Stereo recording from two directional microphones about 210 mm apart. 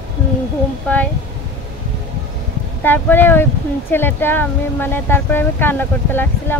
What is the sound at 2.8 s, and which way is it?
Speech, 10° left (ahead or behind).